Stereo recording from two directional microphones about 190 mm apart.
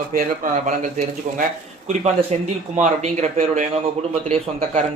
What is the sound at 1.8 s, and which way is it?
Speech, 35° right (ahead or behind).